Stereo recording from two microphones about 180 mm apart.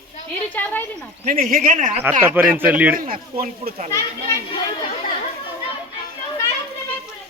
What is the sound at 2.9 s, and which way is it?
Speech, 50° right (ahead or behind).